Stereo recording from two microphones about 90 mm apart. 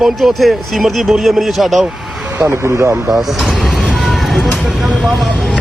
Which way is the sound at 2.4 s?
30° right (ahead or behind).